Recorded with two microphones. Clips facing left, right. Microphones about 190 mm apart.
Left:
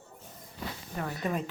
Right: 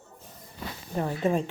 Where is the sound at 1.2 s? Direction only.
30° right (ahead or behind).